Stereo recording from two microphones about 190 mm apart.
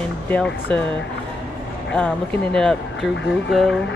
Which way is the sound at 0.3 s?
10° left (ahead or behind).